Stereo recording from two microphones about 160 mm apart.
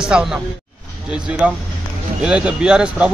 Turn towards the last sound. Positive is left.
turn(degrees=-5)  # may be behind; listen again after turning